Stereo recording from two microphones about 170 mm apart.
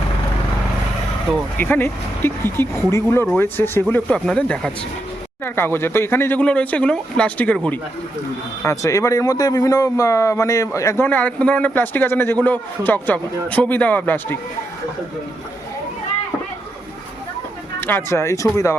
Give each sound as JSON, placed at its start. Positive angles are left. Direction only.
{"t": 1.5, "sound": "speech", "side_deg": 10}
{"t": 17.7, "sound": "speech", "side_deg": 10}